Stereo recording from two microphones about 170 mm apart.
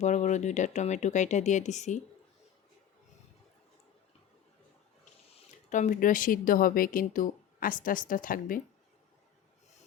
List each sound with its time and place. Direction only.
0.0 s speech: 45° left (ahead or behind)
5.7 s speech: 50° left (ahead or behind)